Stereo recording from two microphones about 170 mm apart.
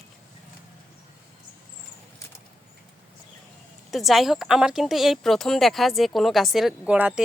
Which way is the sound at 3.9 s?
Centre (ahead or behind).